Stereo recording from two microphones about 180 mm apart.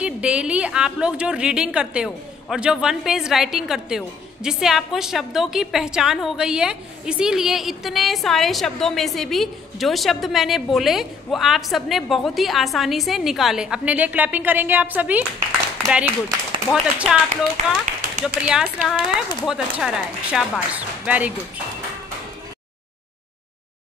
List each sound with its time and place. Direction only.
0.0 s a woman's voice: 5° right (ahead or behind)
17.6 s speech: 40° right (ahead or behind)
18.2 s a woman's voice: centre (ahead or behind)